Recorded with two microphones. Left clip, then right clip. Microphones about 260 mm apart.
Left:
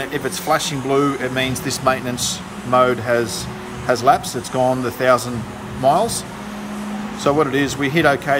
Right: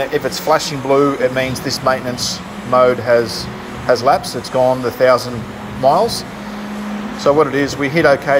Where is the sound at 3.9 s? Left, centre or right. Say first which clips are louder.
Right 1 dB; left.